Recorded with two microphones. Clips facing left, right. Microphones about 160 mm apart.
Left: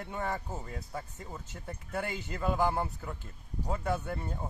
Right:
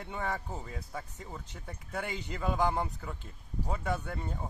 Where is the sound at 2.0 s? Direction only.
15° right (ahead or behind).